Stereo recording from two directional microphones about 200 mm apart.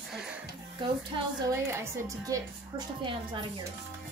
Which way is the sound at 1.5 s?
15° right (ahead or behind).